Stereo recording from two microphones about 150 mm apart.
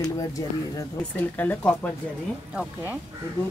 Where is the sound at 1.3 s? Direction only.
10° left (ahead or behind).